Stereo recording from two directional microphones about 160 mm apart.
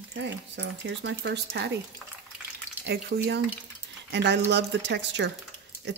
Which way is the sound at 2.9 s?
90° right.